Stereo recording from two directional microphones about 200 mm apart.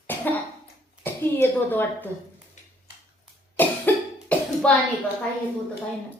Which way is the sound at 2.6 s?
40° left (ahead or behind).